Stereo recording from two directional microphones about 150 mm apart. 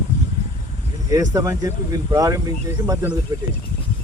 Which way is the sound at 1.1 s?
25° right (ahead or behind).